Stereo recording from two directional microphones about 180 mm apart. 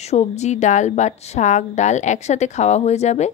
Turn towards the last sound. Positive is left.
turn(degrees=40)  # may be behind; listen again after turning